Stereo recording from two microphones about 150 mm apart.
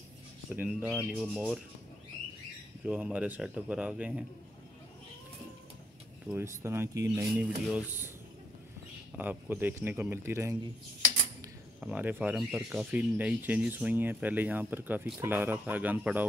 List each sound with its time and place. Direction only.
0.5 s speech: 10° right (ahead or behind)
2.8 s speech: 10° right (ahead or behind)
6.2 s speech: 15° right (ahead or behind)
9.1 s speech: 10° right (ahead or behind)
11.8 s speech: 10° right (ahead or behind)